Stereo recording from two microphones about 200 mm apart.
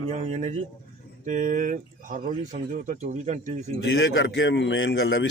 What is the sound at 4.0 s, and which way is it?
A man's voice, 70° left (ahead or behind).